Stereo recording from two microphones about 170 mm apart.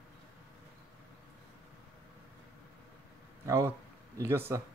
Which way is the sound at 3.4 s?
15° right (ahead or behind).